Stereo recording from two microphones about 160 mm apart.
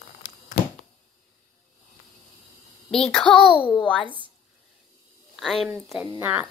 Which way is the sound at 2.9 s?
5° left (ahead or behind).